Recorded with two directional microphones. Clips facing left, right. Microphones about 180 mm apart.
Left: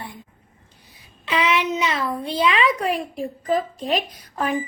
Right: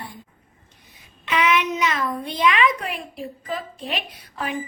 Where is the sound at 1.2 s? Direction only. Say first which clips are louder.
Even; 30° left (ahead or behind).